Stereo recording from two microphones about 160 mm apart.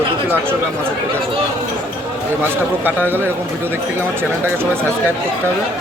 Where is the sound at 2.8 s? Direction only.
15° right (ahead or behind).